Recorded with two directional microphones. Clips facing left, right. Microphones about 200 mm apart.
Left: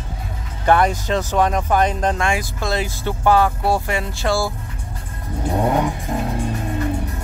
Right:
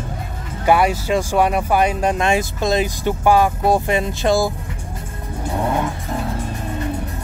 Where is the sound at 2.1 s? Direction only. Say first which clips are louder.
Right 4 dB; 20° right (ahead or behind).